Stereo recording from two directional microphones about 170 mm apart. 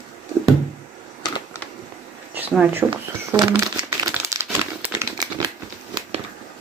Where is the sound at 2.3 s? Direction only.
10° right (ahead or behind).